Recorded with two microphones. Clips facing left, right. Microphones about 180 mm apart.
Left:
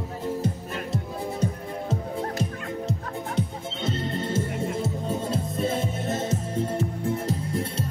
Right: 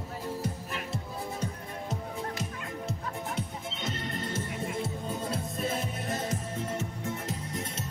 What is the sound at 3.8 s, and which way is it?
Music, 30° left (ahead or behind).